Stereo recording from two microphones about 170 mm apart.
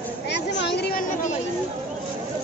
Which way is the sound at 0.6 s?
80° left.